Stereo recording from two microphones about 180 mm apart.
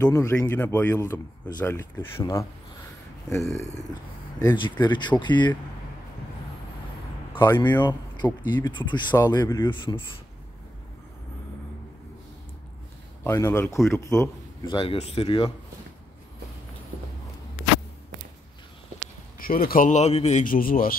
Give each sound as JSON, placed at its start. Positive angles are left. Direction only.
{"t": 0.0, "sound": "speech", "side_deg": 15}
{"t": 4.4, "sound": "speech", "side_deg": 20}
{"t": 7.3, "sound": "speech", "side_deg": 25}
{"t": 13.2, "sound": "a man's voice", "side_deg": 15}
{"t": 14.8, "sound": "speech", "side_deg": 30}
{"t": 19.3, "sound": "a man's voice", "side_deg": 55}